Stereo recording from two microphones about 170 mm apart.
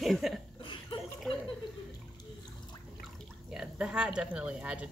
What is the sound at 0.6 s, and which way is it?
Chuckle, 30° left (ahead or behind).